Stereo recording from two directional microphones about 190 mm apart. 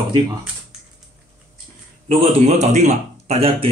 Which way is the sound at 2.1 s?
30° right (ahead or behind).